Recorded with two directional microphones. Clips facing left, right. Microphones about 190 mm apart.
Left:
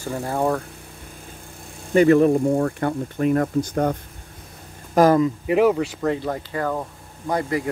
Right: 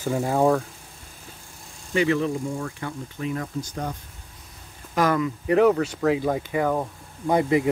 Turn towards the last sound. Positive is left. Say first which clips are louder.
# right 3 dB
turn(degrees=-20)  # may be behind; listen again after turning